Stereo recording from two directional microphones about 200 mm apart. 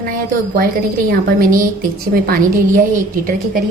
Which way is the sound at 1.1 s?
45° right (ahead or behind).